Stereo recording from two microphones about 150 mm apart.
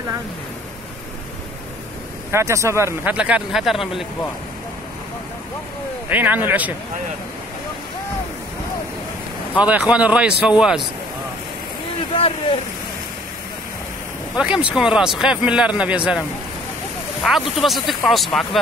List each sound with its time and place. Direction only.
2.3 s speech: 20° right (ahead or behind); by 4.0 s centre (ahead or behind)
6.0 s speech: 10° right (ahead or behind)
9.6 s speech: 10° right (ahead or behind)
12.2 s speech: 40° left (ahead or behind)
14.3 s speech: 5° right (ahead or behind)